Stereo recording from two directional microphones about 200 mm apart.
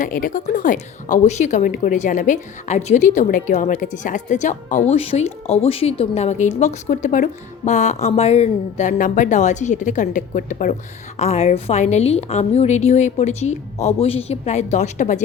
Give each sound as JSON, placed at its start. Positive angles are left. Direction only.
{"t": 0.0, "sound": "a woman's voice", "side_deg": 45}